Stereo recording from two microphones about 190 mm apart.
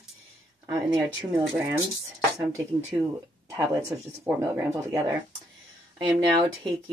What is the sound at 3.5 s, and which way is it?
Speech, 15° right (ahead or behind).